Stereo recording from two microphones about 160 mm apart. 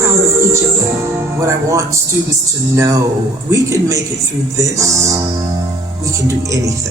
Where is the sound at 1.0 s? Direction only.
20° right (ahead or behind).